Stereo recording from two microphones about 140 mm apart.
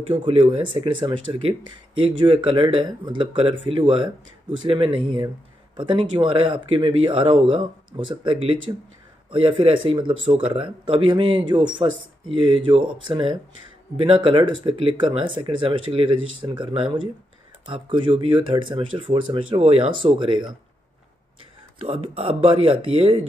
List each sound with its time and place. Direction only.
0.1 s speech: 40° right (ahead or behind)
21.7 s speech: 40° right (ahead or behind)